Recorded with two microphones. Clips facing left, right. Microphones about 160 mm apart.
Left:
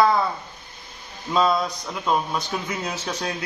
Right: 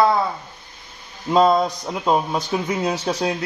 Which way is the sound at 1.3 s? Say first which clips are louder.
Right 5 dB; 40° right (ahead or behind).